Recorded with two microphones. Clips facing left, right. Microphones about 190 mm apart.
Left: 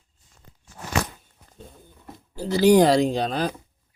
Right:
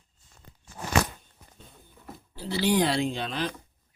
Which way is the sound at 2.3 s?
45° left (ahead or behind).